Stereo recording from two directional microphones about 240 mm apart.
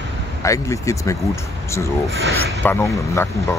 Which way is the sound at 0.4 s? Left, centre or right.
Centre.